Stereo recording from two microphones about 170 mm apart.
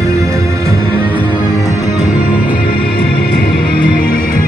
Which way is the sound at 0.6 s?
10° left (ahead or behind).